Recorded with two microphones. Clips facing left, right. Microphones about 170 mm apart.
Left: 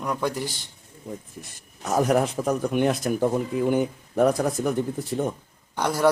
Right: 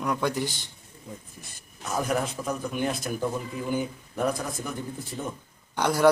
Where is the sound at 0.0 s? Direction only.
5° left (ahead or behind).